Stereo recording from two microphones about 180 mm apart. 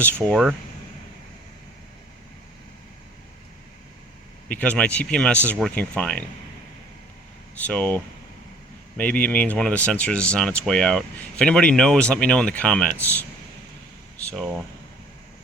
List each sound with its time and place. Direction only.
0.0 s speech: 5° left (ahead or behind)
4.4 s speech: 10° left (ahead or behind)
7.7 s speech: 10° left (ahead or behind)
14.3 s speech: centre (ahead or behind)